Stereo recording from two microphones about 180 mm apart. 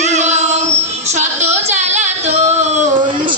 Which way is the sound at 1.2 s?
40° right (ahead or behind).